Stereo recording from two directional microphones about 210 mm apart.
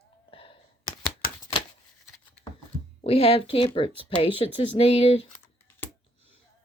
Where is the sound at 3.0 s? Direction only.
30° left (ahead or behind).